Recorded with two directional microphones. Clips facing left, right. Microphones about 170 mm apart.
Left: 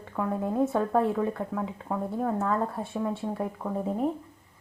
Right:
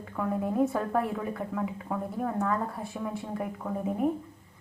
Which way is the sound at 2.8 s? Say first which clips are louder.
Left 4 dB; 30° left (ahead or behind).